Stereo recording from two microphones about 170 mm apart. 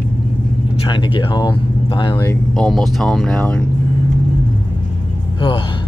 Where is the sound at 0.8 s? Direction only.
30° left (ahead or behind).